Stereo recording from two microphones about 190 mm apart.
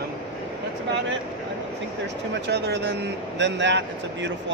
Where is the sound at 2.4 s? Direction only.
60° right (ahead or behind).